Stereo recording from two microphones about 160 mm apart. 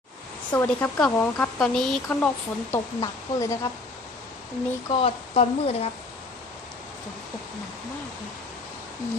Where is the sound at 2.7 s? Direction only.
20° left (ahead or behind).